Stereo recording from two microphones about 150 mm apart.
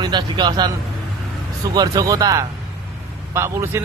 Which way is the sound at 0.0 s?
30° right (ahead or behind).